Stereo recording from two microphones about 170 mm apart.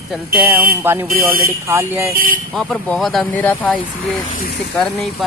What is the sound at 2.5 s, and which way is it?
Speech, 10° left (ahead or behind).